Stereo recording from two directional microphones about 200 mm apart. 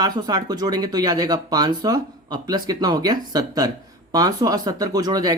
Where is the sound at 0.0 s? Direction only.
20° right (ahead or behind).